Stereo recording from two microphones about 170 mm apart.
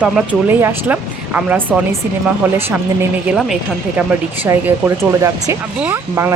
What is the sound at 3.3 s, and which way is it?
Speech, centre (ahead or behind).